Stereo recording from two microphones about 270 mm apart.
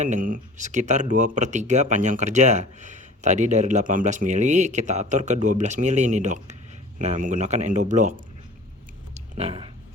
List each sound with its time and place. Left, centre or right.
0.0 s speech: right
9.3 s speech: right